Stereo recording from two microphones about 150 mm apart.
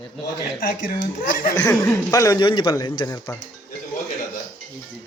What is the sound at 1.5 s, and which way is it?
Speech, 20° left (ahead or behind).